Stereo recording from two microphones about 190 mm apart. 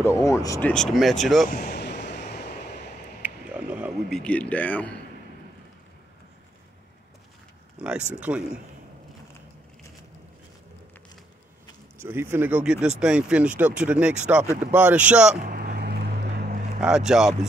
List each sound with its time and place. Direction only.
0.0 s speech: 15° left (ahead or behind)
1.5 s vehicle: 50° left (ahead or behind)
3.2 s a sound: 5° right (ahead or behind)
4.2 s speech: 5° left (ahead or behind)
7.8 s speech: 5° right (ahead or behind)
12.0 s speech: 10° right (ahead or behind)
15.4 s vehicle: 45° right (ahead or behind)
16.8 s speech: 5° right (ahead or behind)